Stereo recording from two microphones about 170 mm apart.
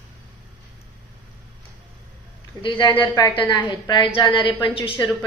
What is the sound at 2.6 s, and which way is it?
A woman's voice, 30° left (ahead or behind).